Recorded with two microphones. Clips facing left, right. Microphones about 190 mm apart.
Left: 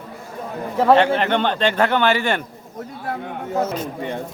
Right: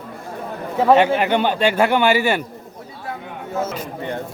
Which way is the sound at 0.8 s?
5° right (ahead or behind).